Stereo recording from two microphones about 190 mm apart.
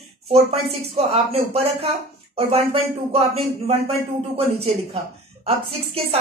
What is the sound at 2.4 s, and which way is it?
Speech, 30° right (ahead or behind).